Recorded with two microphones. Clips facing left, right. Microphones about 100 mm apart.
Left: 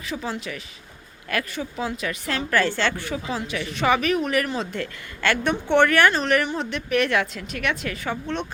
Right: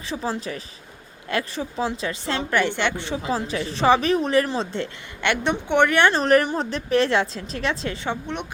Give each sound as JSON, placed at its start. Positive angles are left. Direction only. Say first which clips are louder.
{"t": 0.1, "sound": "a woman's voice", "louder": "right 2 dB", "side_deg": -35}
{"t": 3.2, "sound": "a woman's voice", "louder": "right 3 dB", "side_deg": -35}